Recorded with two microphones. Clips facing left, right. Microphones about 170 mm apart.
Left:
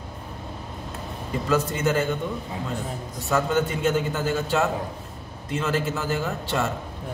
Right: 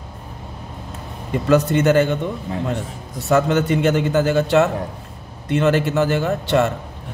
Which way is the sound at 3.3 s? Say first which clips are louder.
Right 6 dB; 75° right (ahead or behind).